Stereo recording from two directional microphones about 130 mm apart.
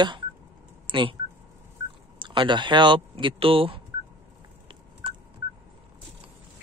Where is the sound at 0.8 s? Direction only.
40° right (ahead or behind).